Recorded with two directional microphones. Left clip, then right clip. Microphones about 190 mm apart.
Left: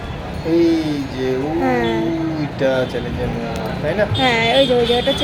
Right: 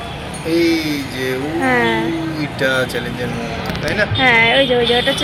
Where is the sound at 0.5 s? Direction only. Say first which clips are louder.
Even; 20° left (ahead or behind).